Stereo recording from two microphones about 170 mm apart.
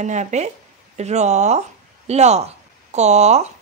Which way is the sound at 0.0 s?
45° right (ahead or behind).